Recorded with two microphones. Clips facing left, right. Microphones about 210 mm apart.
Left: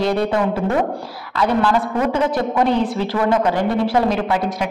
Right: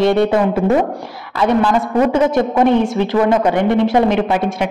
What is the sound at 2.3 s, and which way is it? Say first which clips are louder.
Speech: right 4 dB; 25° right (ahead or behind).